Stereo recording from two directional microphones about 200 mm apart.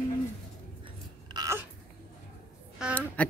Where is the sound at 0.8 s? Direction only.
20° right (ahead or behind).